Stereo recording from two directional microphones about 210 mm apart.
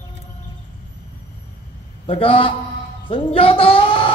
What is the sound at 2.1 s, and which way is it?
Speech, 25° left (ahead or behind).